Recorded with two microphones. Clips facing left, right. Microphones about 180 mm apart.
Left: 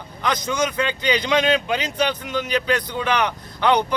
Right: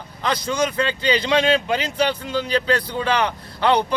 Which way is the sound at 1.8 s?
15° left (ahead or behind).